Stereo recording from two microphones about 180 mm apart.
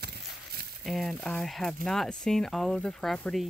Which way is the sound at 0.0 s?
60° right (ahead or behind).